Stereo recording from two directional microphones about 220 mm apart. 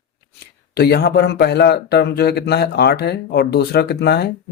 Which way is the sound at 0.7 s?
45° left (ahead or behind).